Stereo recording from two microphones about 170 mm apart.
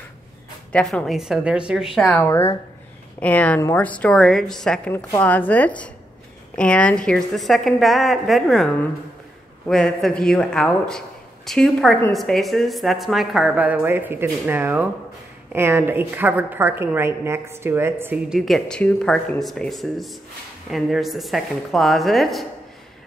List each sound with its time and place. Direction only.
0.7 s speech: 5° left (ahead or behind)
2.2 s a woman's voice: 15° left (ahead or behind)